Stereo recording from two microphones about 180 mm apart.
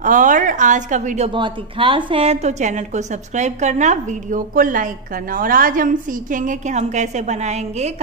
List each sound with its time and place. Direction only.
0.0 s a woman's voice: 45° right (ahead or behind)
1.3 s a woman's voice: 25° right (ahead or behind)